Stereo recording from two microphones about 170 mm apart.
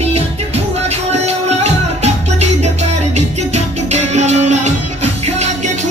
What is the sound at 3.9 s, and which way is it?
Music, 40° right (ahead or behind).